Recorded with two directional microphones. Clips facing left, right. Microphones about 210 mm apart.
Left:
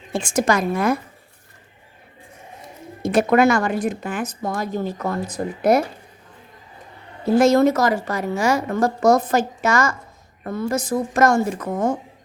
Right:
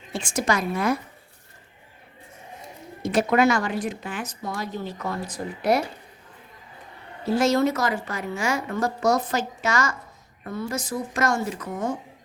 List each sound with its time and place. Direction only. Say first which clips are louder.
0.1 s a woman's voice: left 5 dB; 50° left (ahead or behind)
3.0 s a woman's voice: left 4 dB; 50° left (ahead or behind)
7.3 s a woman's voice: left 6 dB; 50° left (ahead or behind)